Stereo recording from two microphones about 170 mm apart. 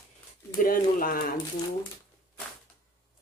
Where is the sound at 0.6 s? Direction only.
55° left (ahead or behind).